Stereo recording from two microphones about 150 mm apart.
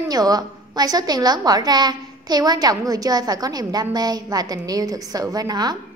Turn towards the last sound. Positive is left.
turn(degrees=-25)  # may be behind; listen again after turning